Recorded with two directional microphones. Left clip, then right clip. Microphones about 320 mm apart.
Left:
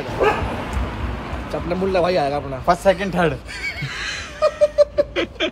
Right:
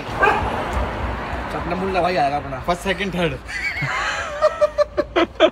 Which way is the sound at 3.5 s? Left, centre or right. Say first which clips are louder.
Right 3 dB; centre.